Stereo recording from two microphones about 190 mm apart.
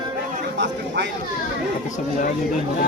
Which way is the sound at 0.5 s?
65° right (ahead or behind).